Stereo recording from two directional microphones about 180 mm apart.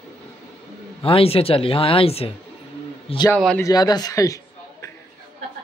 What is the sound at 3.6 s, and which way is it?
Speech, 20° left (ahead or behind).